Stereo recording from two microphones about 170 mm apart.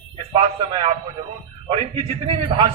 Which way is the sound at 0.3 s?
30° right (ahead or behind).